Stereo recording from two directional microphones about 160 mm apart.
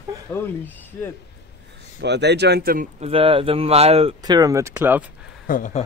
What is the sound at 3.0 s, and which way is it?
Speech, 35° right (ahead or behind).